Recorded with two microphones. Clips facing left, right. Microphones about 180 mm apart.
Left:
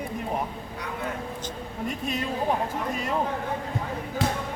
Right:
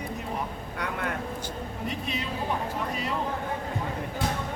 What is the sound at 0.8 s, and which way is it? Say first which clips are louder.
Vehicle: right 2 dB; 65° right (ahead or behind).